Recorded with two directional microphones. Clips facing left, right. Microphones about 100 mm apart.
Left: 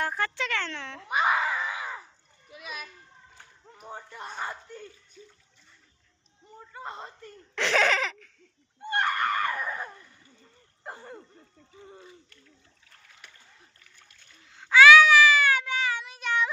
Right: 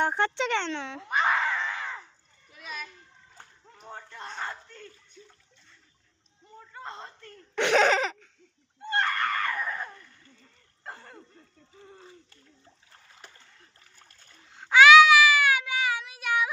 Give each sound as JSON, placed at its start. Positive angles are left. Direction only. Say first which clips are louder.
{"t": 0.0, "sound": "speech", "louder": "right 4 dB", "side_deg": -25}
{"t": 1.0, "sound": "screaming", "louder": "left 1 dB", "side_deg": 10}
{"t": 2.5, "sound": "a sound", "louder": "even", "side_deg": 5}
{"t": 3.8, "sound": "speech", "louder": "left 1 dB", "side_deg": 10}
{"t": 6.7, "sound": "speech", "louder": "left 2 dB", "side_deg": 10}
{"t": 7.6, "sound": "laughter", "louder": "right 3 dB", "side_deg": -15}
{"t": 7.9, "sound": "laughter", "louder": "right 3 dB", "side_deg": -25}
{"t": 8.8, "sound": "screaming", "louder": "left 1 dB", "side_deg": 15}
{"t": 10.8, "sound": "a sound", "louder": "left 3 dB", "side_deg": 15}
{"t": 11.9, "sound": "speech", "louder": "left 1 dB", "side_deg": -30}
{"t": 13.2, "sound": "splash", "louder": "right 1 dB", "side_deg": -35}
{"t": 14.5, "sound": "a sound", "louder": "right 1 dB", "side_deg": -20}